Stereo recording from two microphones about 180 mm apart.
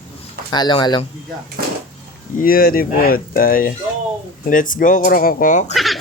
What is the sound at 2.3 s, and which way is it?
Speech, 55° left (ahead or behind).